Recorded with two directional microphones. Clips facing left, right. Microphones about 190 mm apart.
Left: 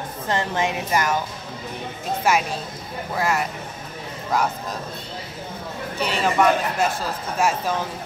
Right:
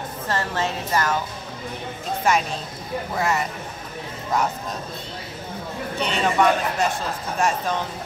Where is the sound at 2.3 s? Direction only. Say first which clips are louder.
Even; 5° left (ahead or behind).